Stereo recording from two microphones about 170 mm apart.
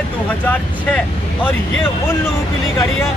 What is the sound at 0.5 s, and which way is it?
Speech, 10° left (ahead or behind).